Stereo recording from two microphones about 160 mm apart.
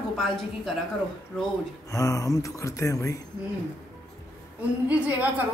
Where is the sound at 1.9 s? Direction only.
20° left (ahead or behind).